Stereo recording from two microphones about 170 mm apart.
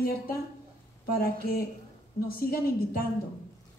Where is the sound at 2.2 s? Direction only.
60° left (ahead or behind).